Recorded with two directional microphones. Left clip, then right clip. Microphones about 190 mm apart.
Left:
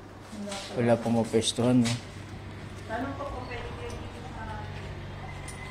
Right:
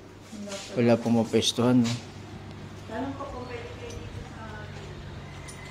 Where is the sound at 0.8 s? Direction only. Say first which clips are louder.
Right 2 dB; 50° right (ahead or behind).